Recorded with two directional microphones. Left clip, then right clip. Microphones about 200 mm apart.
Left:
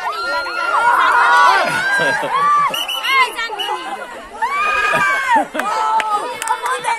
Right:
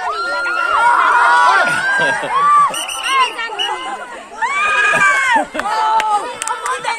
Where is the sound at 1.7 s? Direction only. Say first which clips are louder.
Right 1 dB; 40° left (ahead or behind).